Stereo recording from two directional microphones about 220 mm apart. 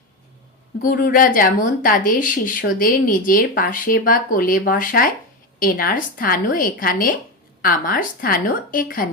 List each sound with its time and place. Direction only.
0.8 s speech: 40° left (ahead or behind)